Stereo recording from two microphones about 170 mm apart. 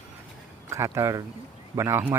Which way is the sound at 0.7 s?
15° right (ahead or behind).